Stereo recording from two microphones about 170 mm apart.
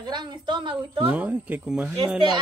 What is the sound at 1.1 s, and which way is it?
Speech, 10° right (ahead or behind).